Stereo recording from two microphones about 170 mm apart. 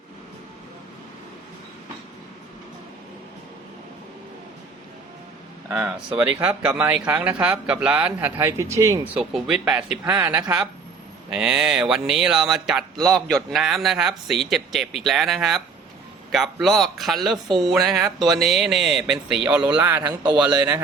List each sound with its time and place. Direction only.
5.6 s speech: 15° right (ahead or behind)
9.3 s speech: 5° right (ahead or behind)